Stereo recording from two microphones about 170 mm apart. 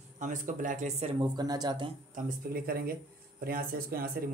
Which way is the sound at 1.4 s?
25° right (ahead or behind).